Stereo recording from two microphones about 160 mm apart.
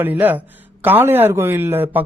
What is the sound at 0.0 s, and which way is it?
Speech, 10° right (ahead or behind).